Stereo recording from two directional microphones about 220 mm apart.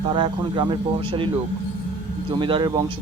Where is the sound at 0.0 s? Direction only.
20° right (ahead or behind).